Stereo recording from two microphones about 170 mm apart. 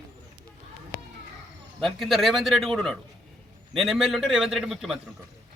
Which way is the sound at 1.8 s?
Centre (ahead or behind).